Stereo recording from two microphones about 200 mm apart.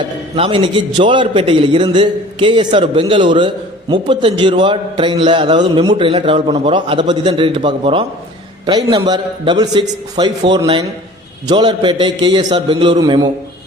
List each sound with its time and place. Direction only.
0.3 s a man's voice: 25° right (ahead or behind)